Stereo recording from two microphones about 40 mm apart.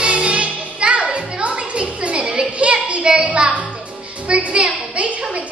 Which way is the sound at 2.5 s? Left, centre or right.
Right.